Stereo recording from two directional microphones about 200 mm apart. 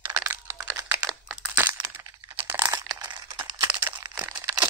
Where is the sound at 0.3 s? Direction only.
15° right (ahead or behind).